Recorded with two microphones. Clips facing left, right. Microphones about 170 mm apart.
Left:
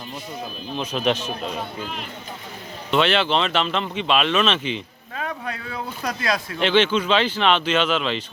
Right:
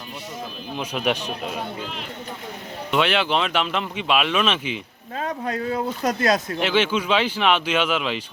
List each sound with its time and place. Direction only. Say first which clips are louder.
0.8 s speech: left 2 dB; 10° right (ahead or behind)
1.8 s speech: left 1 dB; 45° left (ahead or behind)
2.9 s speech: left 1 dB; 10° right (ahead or behind)
5.1 s speech: right 4 dB; 40° right (ahead or behind)
6.6 s speech: left 2 dB; 10° right (ahead or behind)